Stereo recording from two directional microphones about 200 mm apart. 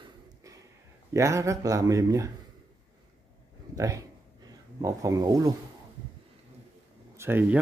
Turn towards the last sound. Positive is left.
turn(degrees=-10)  # may be behind; listen again after turning